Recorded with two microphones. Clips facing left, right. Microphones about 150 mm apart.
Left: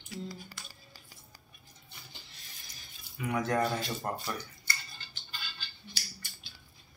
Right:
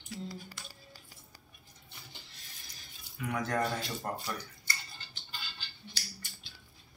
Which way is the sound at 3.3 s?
5° left (ahead or behind).